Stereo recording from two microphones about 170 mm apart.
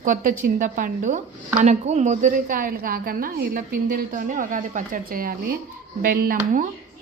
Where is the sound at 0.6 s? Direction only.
55° right (ahead or behind).